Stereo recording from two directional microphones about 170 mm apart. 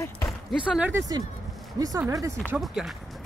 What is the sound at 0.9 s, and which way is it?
Speech, 20° right (ahead or behind).